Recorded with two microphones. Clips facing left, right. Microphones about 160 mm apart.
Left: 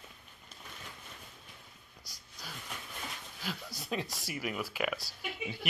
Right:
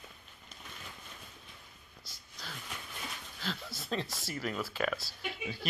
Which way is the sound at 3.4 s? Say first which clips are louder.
Right 1 dB; 15° left (ahead or behind).